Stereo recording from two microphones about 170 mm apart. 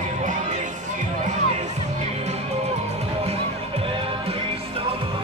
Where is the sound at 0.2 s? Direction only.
45° right (ahead or behind).